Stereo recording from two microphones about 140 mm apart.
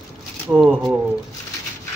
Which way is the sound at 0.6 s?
Centre (ahead or behind).